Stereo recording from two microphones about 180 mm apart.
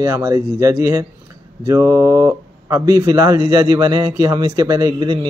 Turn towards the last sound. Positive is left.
turn(degrees=-25)  # may be behind; listen again after turning